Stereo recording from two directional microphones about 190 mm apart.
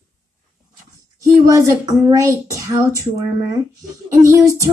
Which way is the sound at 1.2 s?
15° right (ahead or behind).